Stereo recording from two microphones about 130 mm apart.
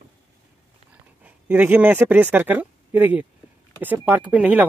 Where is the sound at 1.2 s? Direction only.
15° right (ahead or behind).